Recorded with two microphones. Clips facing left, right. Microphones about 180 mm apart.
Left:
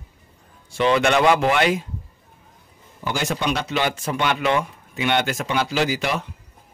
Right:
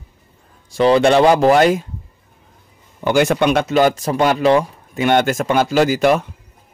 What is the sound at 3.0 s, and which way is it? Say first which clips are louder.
Speech: right 9 dB; 60° right (ahead or behind).